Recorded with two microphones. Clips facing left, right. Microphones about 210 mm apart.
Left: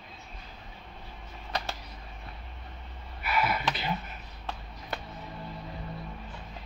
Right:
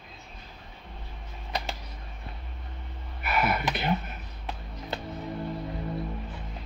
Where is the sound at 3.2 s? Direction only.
45° right (ahead or behind).